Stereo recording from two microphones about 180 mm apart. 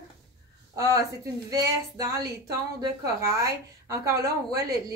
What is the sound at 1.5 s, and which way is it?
A woman's voice, 20° right (ahead or behind).